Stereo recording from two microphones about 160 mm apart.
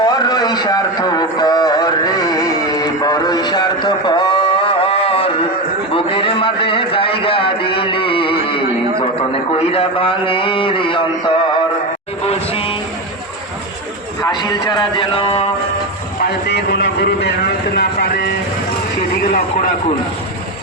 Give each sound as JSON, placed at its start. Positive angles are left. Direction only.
{"t": 0.0, "sound": "a sound", "side_deg": 25}
{"t": 9.5, "sound": "a man's voice", "side_deg": 35}
{"t": 12.2, "sound": "a sound", "side_deg": 35}
{"t": 14.2, "sound": "speech", "side_deg": 25}
{"t": 16.2, "sound": "speech", "side_deg": 90}
{"t": 17.7, "sound": "speech", "side_deg": 80}
{"t": 19.2, "sound": "a man's voice", "side_deg": 55}